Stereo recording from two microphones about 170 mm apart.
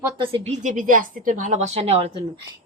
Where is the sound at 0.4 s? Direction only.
45° right (ahead or behind).